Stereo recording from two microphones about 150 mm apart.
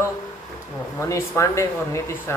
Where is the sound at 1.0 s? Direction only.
20° left (ahead or behind).